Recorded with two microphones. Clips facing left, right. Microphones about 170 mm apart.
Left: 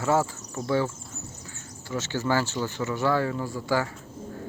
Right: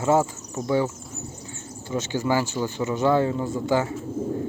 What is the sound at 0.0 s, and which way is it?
Speech, 20° right (ahead or behind).